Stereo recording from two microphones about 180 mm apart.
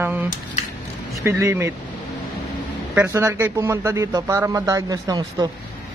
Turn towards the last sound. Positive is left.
turn(degrees=-20)  # may be behind; listen again after turning